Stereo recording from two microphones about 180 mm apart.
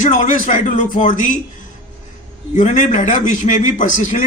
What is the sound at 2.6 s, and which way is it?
A man's voice, 45° left (ahead or behind).